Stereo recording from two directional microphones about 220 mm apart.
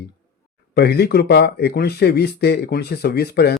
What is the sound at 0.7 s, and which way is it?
Speech, 45° left (ahead or behind).